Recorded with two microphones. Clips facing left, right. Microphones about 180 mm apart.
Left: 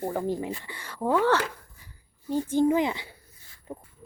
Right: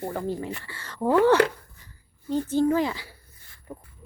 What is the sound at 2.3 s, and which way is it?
Speech, 10° left (ahead or behind).